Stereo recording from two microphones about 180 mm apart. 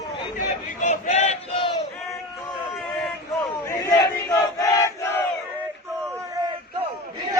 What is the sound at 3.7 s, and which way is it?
Battle cry, 20° left (ahead or behind).